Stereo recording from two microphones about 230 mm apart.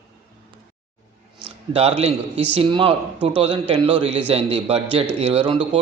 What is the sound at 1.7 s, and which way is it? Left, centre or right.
Speech, right.